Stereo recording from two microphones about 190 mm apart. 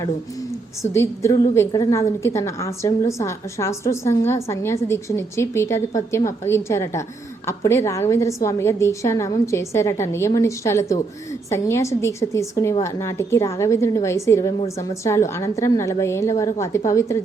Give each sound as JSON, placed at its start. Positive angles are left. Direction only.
{"t": 0.8, "sound": "a woman's voice", "side_deg": 15}